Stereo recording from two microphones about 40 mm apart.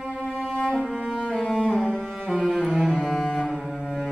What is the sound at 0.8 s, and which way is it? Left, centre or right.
Cello, centre.